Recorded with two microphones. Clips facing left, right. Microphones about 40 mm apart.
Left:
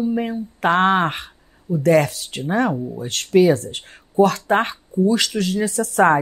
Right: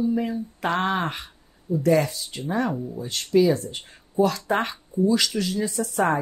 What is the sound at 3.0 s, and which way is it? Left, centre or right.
Speech, left.